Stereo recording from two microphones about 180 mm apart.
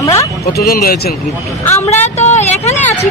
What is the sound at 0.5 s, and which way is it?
Speech, 60° left (ahead or behind).